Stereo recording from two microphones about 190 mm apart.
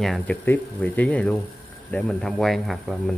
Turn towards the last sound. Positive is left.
turn(degrees=0)  # may be behind; listen again after turning